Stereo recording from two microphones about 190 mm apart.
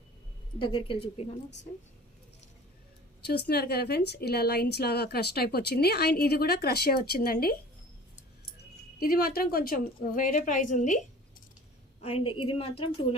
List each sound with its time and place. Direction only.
0.6 s a woman's voice: 25° left (ahead or behind)
3.2 s a woman's voice: 60° left (ahead or behind)
9.0 s a woman's voice: 50° left (ahead or behind)
12.0 s a woman's voice: 30° left (ahead or behind)